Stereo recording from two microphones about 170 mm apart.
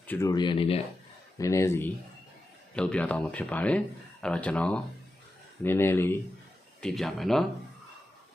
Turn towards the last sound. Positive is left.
turn(degrees=0)  # may be behind; listen again after turning